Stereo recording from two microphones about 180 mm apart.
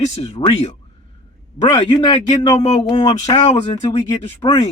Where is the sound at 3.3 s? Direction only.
35° left (ahead or behind).